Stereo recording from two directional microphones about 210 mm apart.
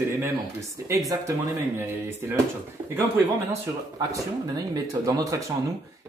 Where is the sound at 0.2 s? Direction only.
15° right (ahead or behind).